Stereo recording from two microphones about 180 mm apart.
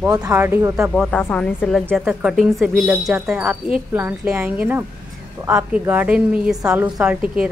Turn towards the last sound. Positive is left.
turn(degrees=-5)  # may be behind; listen again after turning